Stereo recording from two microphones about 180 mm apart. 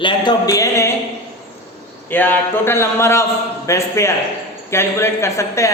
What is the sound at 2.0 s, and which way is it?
A woman's voice, 10° left (ahead or behind).